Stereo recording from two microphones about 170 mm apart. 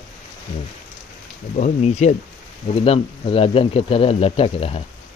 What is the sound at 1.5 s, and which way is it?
Speech, 45° left (ahead or behind).